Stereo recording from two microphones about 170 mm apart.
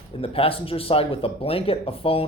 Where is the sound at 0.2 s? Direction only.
35° left (ahead or behind).